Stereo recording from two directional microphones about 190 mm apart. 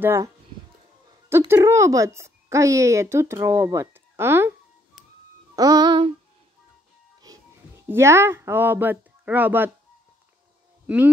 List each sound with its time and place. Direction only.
0.0 s speech: 15° right (ahead or behind)
1.5 s speech: 15° right (ahead or behind)
5.6 s music: 20° right (ahead or behind)
7.2 s speech: 15° right (ahead or behind)